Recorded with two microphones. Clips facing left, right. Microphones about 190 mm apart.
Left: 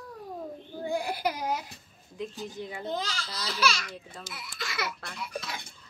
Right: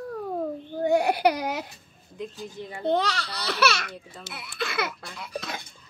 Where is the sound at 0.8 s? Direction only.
70° right (ahead or behind).